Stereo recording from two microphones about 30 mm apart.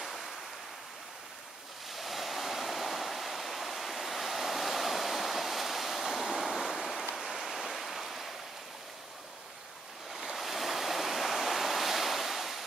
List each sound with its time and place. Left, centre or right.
0.0 s waves: centre
1.9 s waves: centre
7.2 s a sound: centre
7.7 s waves: centre
10.1 s waves: centre